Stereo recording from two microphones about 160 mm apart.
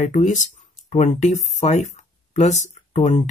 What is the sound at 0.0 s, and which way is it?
Speech, 50° left (ahead or behind).